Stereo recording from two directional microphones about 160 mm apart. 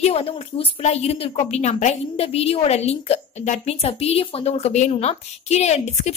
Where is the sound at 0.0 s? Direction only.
40° left (ahead or behind).